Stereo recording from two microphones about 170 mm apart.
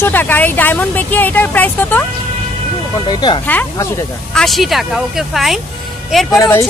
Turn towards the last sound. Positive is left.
turn(degrees=15)  # may be behind; listen again after turning